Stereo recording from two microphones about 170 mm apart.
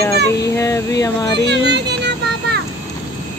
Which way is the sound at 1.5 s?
85° right.